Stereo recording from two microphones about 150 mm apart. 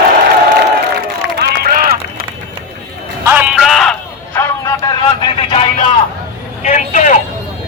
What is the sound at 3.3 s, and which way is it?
Music, 10° right (ahead or behind).